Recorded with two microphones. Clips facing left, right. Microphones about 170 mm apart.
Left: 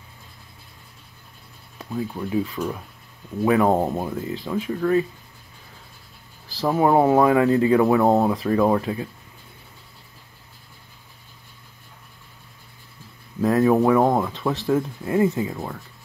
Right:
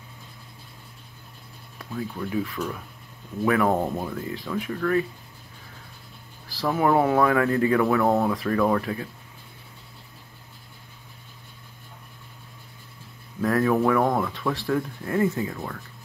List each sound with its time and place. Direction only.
1.8 s speech: 25° left (ahead or behind)
6.5 s speech: 25° left (ahead or behind)
13.4 s speech: 20° left (ahead or behind)